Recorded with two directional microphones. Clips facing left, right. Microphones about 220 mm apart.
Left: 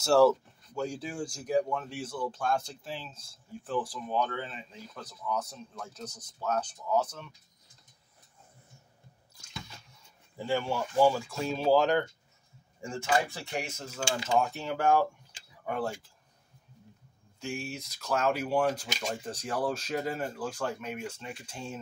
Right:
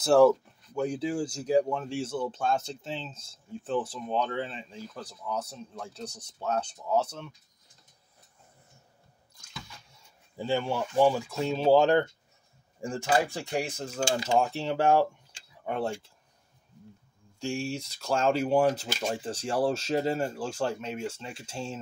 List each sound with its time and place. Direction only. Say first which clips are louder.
0.0 s speech: right 2 dB; 15° right (ahead or behind)
10.4 s speech: right 2 dB; 25° right (ahead or behind)
17.4 s speech: right 5 dB; 30° right (ahead or behind)